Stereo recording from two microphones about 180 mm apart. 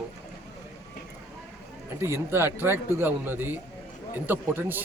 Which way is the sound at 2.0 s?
15° right (ahead or behind).